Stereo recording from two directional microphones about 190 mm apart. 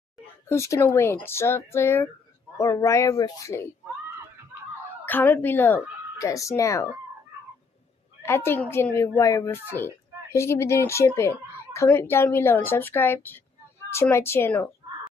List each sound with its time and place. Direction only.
0.5 s a woman's voice: 15° left (ahead or behind)
5.0 s a woman's voice: 10° left (ahead or behind)
8.2 s a woman's voice: 15° left (ahead or behind)